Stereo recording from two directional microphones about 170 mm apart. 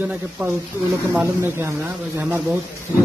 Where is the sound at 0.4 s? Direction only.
15° right (ahead or behind).